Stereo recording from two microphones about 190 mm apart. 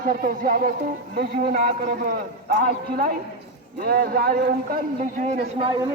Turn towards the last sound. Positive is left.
turn(degrees=-30)  # may be behind; listen again after turning